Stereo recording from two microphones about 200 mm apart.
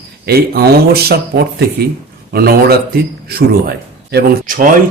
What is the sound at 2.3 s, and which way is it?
A man's voice, 50° right (ahead or behind).